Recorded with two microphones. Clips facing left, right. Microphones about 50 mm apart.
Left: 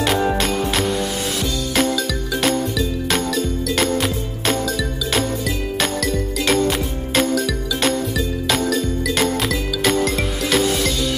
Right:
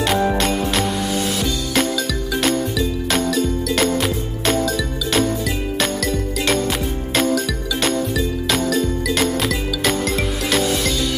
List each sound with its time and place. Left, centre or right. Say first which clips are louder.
0.0 s music: right 1 dB; centre
2.3 s music: even; centre
6.4 s music: left 2 dB; centre